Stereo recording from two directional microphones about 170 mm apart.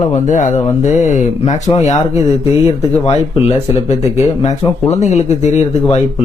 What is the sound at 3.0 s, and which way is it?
Speech, 40° left (ahead or behind).